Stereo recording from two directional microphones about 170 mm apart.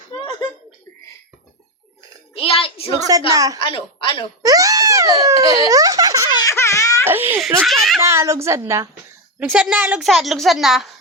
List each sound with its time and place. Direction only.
2.3 s a sound: 35° left (ahead or behind)
3.1 s a woman's voice: 20° right (ahead or behind)
3.6 s a woman's voice: 30° left (ahead or behind)
4.4 s speech: 20° right (ahead or behind)
6.4 s baby cry: 15° left (ahead or behind)
7.0 s a child's voice: 15° right (ahead or behind)
7.6 s a woman's voice: centre (ahead or behind)
8.0 s a woman's voice: 15° right (ahead or behind)
9.4 s a woman's voice: 5° right (ahead or behind)